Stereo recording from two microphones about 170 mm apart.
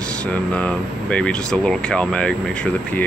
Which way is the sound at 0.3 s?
5° left (ahead or behind).